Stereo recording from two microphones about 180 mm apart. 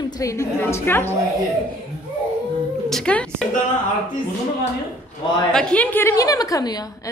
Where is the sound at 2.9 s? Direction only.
5° left (ahead or behind).